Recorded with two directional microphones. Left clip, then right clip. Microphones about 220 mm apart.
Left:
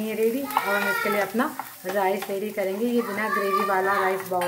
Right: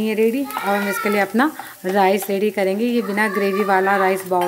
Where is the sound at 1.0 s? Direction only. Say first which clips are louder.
Right 6 dB; 45° right (ahead or behind).